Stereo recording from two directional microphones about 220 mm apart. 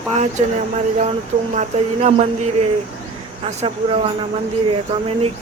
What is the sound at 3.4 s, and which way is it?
Speech, 30° right (ahead or behind).